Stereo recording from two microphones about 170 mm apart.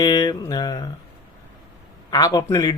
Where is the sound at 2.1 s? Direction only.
20° left (ahead or behind).